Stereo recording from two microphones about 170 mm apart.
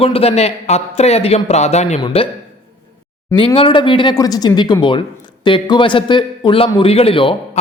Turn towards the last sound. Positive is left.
turn(degrees=30)  # may be behind; listen again after turning